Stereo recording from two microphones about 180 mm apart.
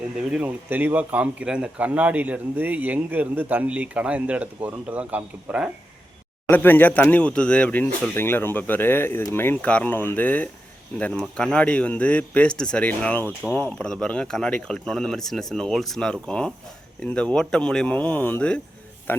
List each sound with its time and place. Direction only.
0.2 s speech: 5° right (ahead or behind)
6.5 s speech: 10° left (ahead or behind)